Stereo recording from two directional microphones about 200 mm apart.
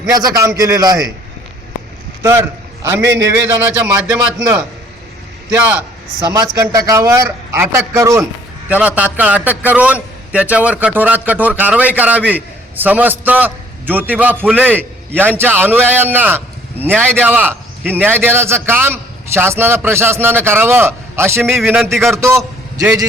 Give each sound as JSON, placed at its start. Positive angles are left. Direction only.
{"t": 0.0, "sound": "a man's voice", "side_deg": -20}
{"t": 2.2, "sound": "a man's voice", "side_deg": -10}
{"t": 21.4, "sound": "a man's voice", "side_deg": 0}
{"t": 22.8, "sound": "a man's voice", "side_deg": -15}